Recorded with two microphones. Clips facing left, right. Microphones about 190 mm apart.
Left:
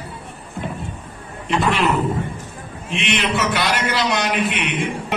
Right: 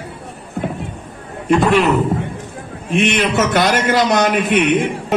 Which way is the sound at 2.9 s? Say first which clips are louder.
Right 6 dB; 45° right (ahead or behind).